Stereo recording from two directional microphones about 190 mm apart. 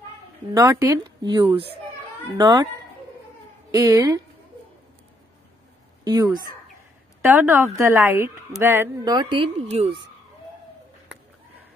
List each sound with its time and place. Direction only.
0.6 s speech: 15° right (ahead or behind)
3.7 s speech: 20° right (ahead or behind)
6.0 s speech: 20° right (ahead or behind)